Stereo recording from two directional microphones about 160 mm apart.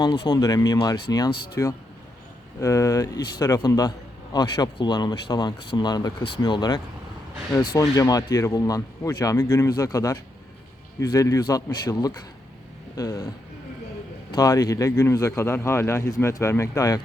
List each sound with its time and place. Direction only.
0.3 s a man's voice: 25° left (ahead or behind)
14.3 s a man's voice: 25° left (ahead or behind)